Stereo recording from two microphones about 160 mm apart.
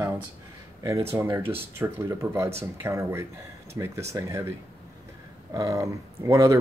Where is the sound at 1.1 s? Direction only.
15° right (ahead or behind).